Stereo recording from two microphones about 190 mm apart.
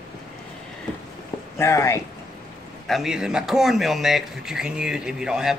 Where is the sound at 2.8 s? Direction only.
Centre (ahead or behind).